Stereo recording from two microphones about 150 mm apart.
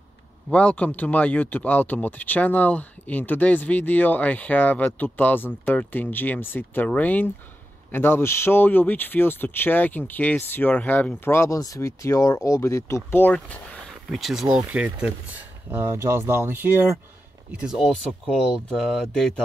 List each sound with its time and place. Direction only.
0.5 s speech: 10° left (ahead or behind)
14.1 s speech: centre (ahead or behind)